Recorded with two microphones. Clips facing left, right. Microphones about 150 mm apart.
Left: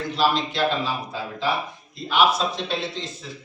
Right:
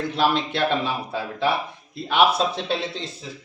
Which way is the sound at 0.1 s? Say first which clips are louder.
Left 1 dB; 60° right (ahead or behind).